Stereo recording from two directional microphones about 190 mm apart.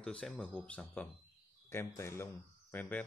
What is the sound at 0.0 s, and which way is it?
Speech, 5° left (ahead or behind).